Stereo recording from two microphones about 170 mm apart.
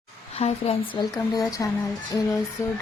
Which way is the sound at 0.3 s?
40° left (ahead or behind).